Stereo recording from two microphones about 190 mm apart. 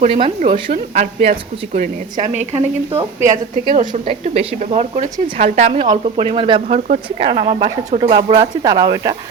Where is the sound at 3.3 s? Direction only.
40° right (ahead or behind); by 9.1 s 20° right (ahead or behind).